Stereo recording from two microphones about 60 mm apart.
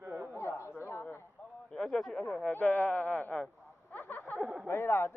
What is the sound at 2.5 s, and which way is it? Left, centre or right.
Speech, left.